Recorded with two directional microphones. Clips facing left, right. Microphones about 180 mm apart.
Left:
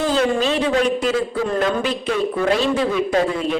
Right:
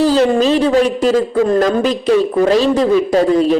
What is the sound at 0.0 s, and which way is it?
A woman's voice, 35° right (ahead or behind).